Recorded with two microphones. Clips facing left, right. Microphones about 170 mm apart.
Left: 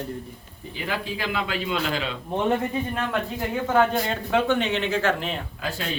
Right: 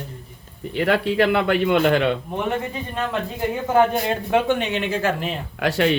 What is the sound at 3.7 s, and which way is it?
Speech, 15° right (ahead or behind).